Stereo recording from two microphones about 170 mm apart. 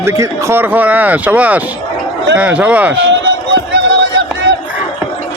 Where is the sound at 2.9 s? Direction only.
90° right.